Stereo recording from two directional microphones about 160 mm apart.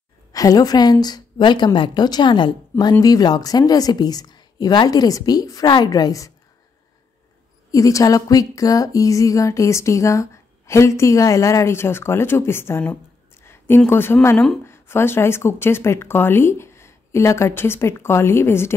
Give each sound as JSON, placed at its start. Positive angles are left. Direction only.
{"t": 0.3, "sound": "a woman's voice", "side_deg": 20}
{"t": 7.7, "sound": "speech", "side_deg": 20}